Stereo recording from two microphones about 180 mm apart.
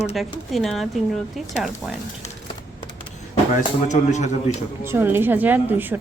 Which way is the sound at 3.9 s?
40° left (ahead or behind).